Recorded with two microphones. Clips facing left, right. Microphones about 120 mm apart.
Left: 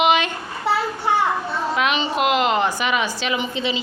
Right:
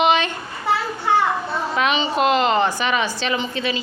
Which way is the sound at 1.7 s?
Centre (ahead or behind).